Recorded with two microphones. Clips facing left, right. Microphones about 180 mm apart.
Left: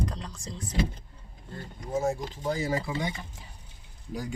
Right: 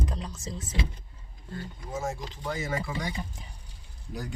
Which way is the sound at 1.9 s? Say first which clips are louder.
Left 5 dB; 35° left (ahead or behind).